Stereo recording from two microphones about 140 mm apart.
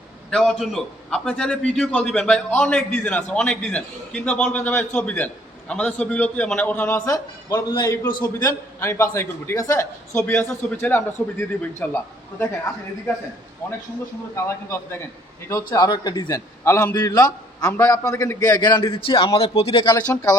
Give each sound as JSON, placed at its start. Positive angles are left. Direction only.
{"t": 0.3, "sound": "a man's voice", "side_deg": 5}
{"t": 14.3, "sound": "a man's voice", "side_deg": 20}
{"t": 16.6, "sound": "a man's voice", "side_deg": 15}
{"t": 16.9, "sound": "a man's voice", "side_deg": 30}